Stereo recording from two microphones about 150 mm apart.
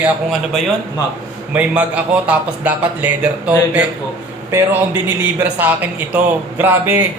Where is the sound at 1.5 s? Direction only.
10° right (ahead or behind).